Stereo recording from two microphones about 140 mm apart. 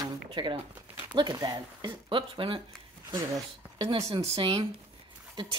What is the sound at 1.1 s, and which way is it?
Speech, 30° right (ahead or behind).